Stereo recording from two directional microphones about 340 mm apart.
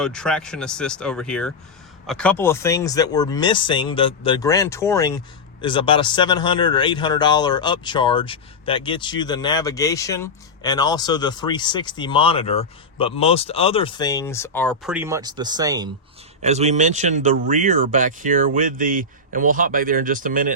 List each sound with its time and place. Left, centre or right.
0.0 s speech: centre; by 20.5 s right